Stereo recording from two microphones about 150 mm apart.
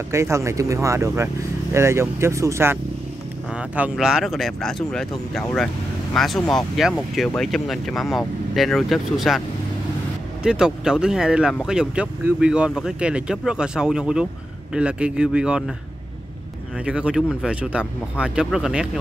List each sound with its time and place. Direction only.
0.1 s speech: 20° right (ahead or behind); by 9.4 s centre (ahead or behind)
10.4 s speech: 5° right (ahead or behind)
16.8 s speech: 5° right (ahead or behind)